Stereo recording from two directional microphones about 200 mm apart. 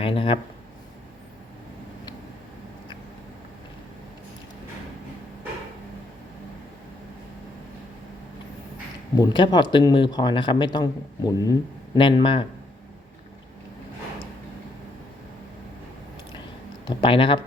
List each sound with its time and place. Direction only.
0.0 s a sound: 25° left (ahead or behind)
9.1 s speech: 20° left (ahead or behind)
16.8 s speech: 25° left (ahead or behind)